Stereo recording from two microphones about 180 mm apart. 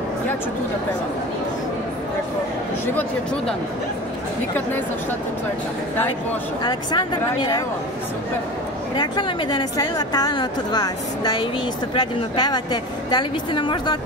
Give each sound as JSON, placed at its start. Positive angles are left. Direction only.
{"t": 6.6, "sound": "a woman's voice", "side_deg": 25}
{"t": 8.9, "sound": "a woman's voice", "side_deg": 25}